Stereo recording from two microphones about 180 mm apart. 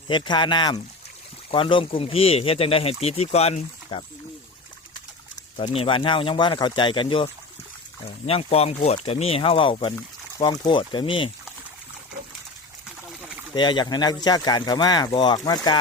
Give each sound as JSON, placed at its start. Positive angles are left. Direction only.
{"t": 0.1, "sound": "speech", "side_deg": 25}
{"t": 5.5, "sound": "speech", "side_deg": 30}
{"t": 8.3, "sound": "speech", "side_deg": 35}
{"t": 13.5, "sound": "speech", "side_deg": 25}